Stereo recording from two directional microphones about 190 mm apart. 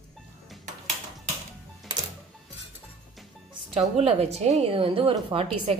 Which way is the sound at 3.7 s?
35° right (ahead or behind).